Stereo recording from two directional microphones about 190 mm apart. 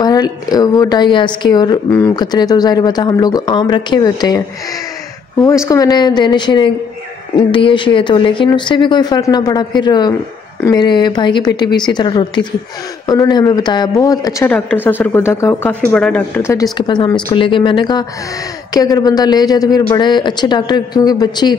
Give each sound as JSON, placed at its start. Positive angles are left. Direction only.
{"t": 0.0, "sound": "a woman's voice", "side_deg": 20}
{"t": 5.7, "sound": "a woman's voice", "side_deg": 20}
{"t": 16.7, "sound": "a woman's voice", "side_deg": 25}